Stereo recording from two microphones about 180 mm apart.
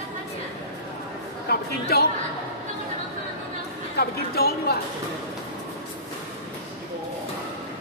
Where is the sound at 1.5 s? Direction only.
60° left (ahead or behind).